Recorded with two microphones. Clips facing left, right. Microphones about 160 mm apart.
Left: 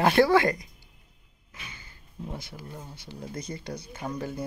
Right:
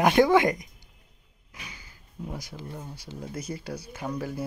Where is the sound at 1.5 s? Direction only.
10° right (ahead or behind).